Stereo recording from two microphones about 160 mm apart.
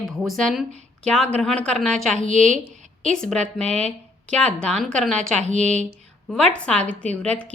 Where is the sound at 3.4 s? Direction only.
40° right (ahead or behind).